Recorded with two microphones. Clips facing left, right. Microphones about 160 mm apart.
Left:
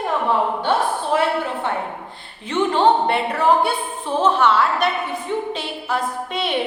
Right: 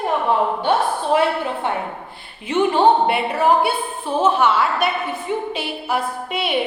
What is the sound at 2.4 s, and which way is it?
A woman's voice, 10° right (ahead or behind).